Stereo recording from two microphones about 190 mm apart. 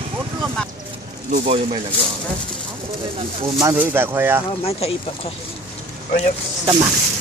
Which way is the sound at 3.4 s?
15° right (ahead or behind).